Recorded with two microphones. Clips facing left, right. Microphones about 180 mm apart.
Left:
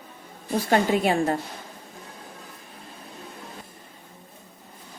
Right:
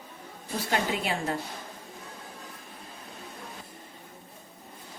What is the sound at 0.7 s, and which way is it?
Speech, 45° left (ahead or behind).